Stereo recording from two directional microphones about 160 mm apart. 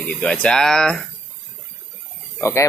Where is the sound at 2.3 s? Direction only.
15° left (ahead or behind).